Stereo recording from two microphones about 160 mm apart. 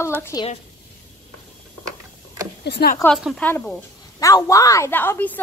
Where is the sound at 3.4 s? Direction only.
10° left (ahead or behind).